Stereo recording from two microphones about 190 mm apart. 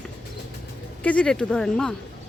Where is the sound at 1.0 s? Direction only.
5° left (ahead or behind).